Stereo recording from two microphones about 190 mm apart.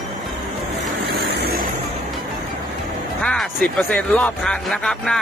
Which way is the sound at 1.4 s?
55° right (ahead or behind).